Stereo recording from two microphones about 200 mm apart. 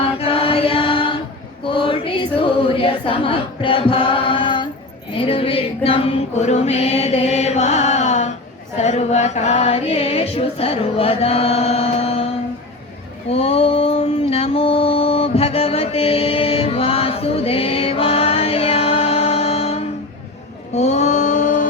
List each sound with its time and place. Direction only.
0.0 s chant: 30° left (ahead or behind)
1.6 s choir: 25° left (ahead or behind)
5.1 s a sound: 25° left (ahead or behind)